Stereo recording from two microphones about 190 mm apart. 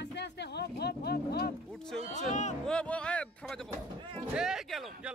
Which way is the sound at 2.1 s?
40° left (ahead or behind).